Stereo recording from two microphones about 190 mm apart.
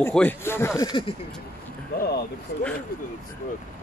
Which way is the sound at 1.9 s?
55° left (ahead or behind).